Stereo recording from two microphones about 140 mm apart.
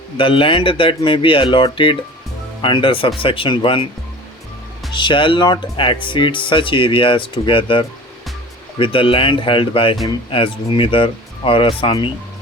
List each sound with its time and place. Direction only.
0.2 s speech: 40° left (ahead or behind)
4.9 s speech: 35° left (ahead or behind)